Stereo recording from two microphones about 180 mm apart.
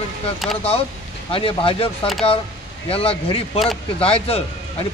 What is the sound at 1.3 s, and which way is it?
Speech, 30° left (ahead or behind).